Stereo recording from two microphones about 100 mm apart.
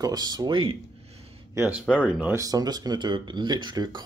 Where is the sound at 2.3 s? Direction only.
35° right (ahead or behind).